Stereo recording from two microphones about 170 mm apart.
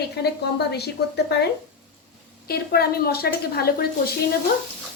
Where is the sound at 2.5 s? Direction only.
65° left (ahead or behind).